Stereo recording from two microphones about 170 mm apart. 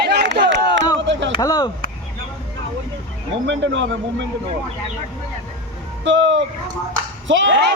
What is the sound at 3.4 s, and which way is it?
Speech, 90° right.